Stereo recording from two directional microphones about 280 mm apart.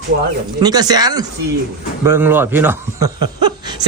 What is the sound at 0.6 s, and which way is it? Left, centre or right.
Speech, centre.